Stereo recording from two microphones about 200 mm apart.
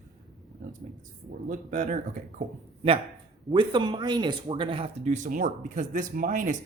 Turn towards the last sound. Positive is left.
turn(degrees=-40)  # may be behind; listen again after turning